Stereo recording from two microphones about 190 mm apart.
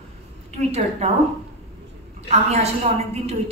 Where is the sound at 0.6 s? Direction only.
35° right (ahead or behind).